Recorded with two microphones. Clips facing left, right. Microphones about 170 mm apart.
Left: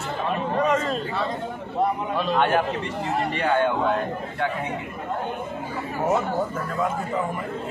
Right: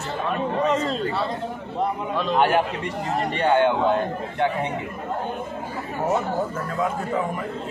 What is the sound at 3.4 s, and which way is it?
Speech, 25° right (ahead or behind).